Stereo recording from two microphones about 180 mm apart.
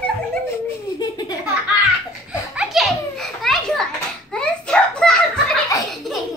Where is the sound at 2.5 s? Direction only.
5° right (ahead or behind).